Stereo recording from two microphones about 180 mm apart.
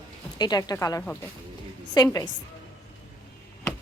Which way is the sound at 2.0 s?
25° left (ahead or behind).